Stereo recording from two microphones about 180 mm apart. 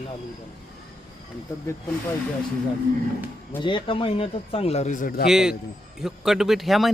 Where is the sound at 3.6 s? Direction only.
25° left (ahead or behind); by 5.3 s 55° left (ahead or behind).